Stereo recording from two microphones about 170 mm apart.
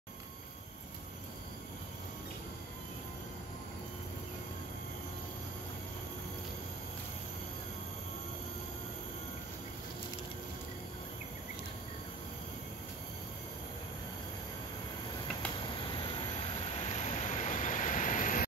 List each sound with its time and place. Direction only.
15.9 s vehicle: 30° left (ahead or behind)
16.9 s vehicle: 45° left (ahead or behind)